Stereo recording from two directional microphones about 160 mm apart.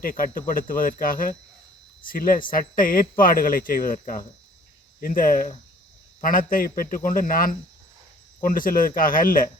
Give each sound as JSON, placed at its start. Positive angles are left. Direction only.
{"t": 0.0, "sound": "speech", "side_deg": 60}